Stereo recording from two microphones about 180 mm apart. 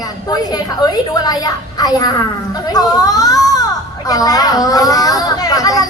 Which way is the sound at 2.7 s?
20° left (ahead or behind).